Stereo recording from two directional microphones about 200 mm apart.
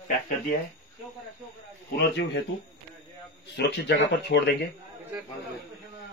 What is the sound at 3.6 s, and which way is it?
Speech, 55° left (ahead or behind).